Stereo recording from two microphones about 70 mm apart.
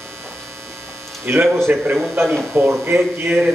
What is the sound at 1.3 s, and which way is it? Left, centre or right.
Speech, right.